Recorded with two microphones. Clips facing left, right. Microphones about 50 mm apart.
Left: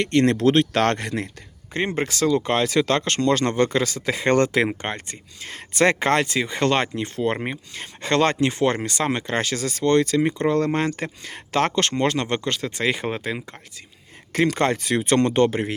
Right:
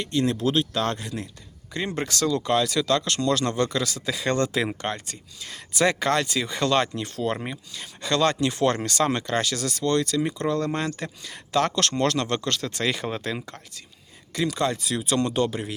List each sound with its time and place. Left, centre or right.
0.0 s speech: left
1.7 s speech: left
2.0 s speech: left
14.3 s speech: left